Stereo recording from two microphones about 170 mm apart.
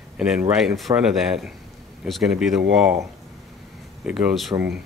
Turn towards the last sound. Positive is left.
turn(degrees=0)  # may be behind; listen again after turning